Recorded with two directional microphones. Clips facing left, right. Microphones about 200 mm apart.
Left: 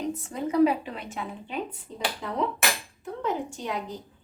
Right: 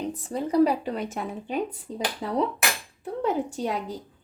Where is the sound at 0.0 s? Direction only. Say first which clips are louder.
Right 1 dB; 35° right (ahead or behind).